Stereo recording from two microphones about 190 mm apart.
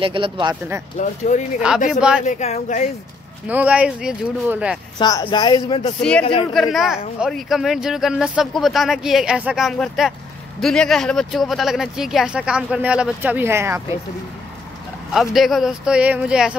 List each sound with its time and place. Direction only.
0.0 s speech: 25° right (ahead or behind)
0.9 s speech: 40° left (ahead or behind)
1.9 s speech: 5° right (ahead or behind)
2.2 s speech: 35° left (ahead or behind)
3.4 s speech: 5° right (ahead or behind)
4.9 s speech: 20° left (ahead or behind)
6.5 s speech: centre (ahead or behind)
15.1 s speech: centre (ahead or behind)